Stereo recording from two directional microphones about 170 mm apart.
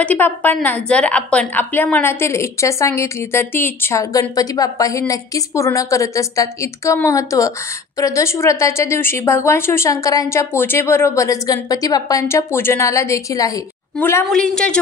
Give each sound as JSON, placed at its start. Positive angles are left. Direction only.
{"t": 0.0, "sound": "a woman's voice", "side_deg": 10}